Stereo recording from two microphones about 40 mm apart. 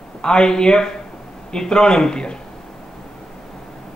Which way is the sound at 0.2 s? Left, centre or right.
Centre.